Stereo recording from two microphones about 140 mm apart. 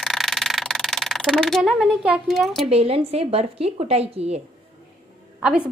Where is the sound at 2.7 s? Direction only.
45° right (ahead or behind).